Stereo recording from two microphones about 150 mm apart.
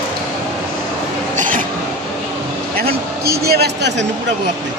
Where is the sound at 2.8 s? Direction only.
90° right.